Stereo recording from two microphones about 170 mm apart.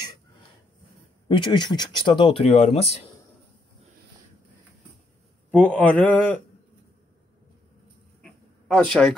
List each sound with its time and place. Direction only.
1.3 s speech: 25° left (ahead or behind)
5.5 s mantra: 5° left (ahead or behind)
8.2 s a sound: 5° left (ahead or behind)